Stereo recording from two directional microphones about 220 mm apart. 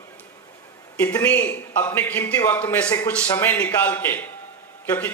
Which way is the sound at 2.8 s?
15° left (ahead or behind).